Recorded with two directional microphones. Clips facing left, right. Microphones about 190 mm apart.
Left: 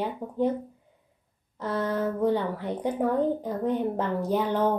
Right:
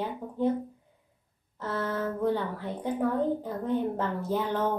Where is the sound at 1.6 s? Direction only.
15° left (ahead or behind).